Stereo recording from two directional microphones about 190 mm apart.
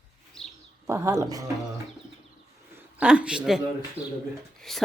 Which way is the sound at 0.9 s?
15° right (ahead or behind).